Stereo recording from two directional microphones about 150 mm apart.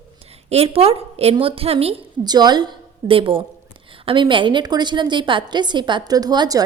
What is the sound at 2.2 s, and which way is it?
A woman's voice, 30° right (ahead or behind).